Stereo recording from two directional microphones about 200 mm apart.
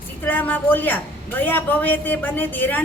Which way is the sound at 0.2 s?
10° left (ahead or behind).